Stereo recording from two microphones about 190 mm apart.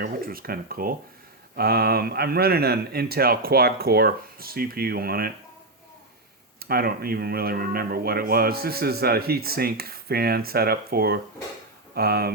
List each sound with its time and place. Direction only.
0.0 s speech: 50° right (ahead or behind)
6.6 s speech: 50° right (ahead or behind)